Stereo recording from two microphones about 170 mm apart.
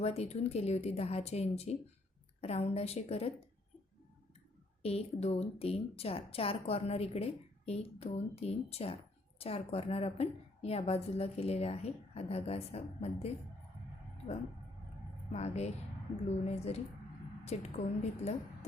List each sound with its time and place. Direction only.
0.0 s a woman's voice: 35° left (ahead or behind)
4.8 s a woman's voice: 35° left (ahead or behind)
15.3 s a woman's voice: 40° left (ahead or behind)